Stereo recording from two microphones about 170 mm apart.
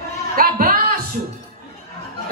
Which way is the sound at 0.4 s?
60° right (ahead or behind).